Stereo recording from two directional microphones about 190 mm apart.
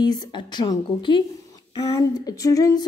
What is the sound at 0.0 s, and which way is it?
Speech, 20° left (ahead or behind).